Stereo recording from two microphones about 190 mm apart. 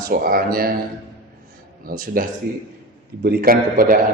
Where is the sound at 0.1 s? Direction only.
50° right (ahead or behind).